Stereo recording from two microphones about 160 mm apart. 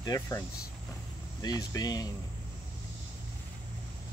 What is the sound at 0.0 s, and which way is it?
Speech, 25° left (ahead or behind).